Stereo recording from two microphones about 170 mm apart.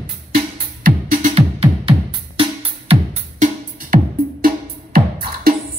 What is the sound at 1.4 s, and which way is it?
Music, 35° right (ahead or behind).